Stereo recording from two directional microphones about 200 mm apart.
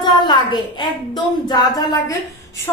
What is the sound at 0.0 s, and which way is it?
A woman's voice, 20° left (ahead or behind).